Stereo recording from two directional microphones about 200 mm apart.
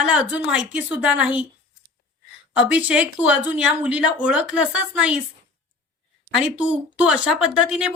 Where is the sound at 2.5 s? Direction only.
5° right (ahead or behind).